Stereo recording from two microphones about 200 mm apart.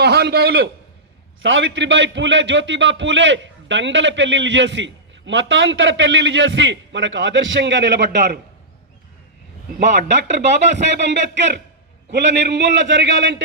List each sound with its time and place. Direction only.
0.0 s a man's voice: 55° right (ahead or behind)
1.4 s a man's voice: 70° right (ahead or behind)
9.8 s a man's voice: 60° right (ahead or behind)